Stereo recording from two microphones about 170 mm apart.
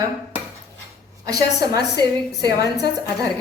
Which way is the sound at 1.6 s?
20° right (ahead or behind).